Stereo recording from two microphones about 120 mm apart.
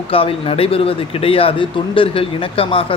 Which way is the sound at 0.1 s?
50° left (ahead or behind).